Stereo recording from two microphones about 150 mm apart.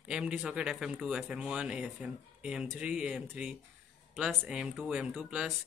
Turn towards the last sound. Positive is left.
turn(degrees=-5)  # may be behind; listen again after turning